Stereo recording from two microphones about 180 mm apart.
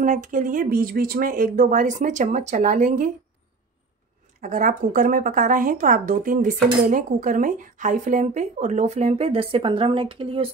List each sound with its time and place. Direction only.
0.0 s a woman's voice: 45° right (ahead or behind)
4.4 s a woman's voice: 50° right (ahead or behind); by 10.5 s 30° right (ahead or behind)